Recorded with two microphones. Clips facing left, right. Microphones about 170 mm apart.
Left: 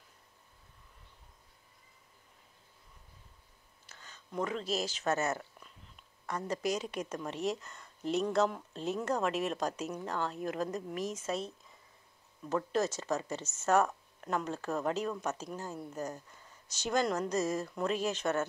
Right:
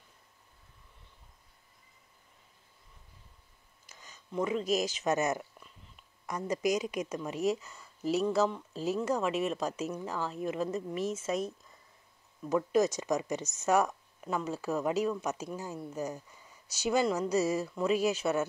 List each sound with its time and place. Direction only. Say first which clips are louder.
3.9 s speech: right 3 dB; 10° right (ahead or behind)
12.4 s speech: right 4 dB; 10° right (ahead or behind)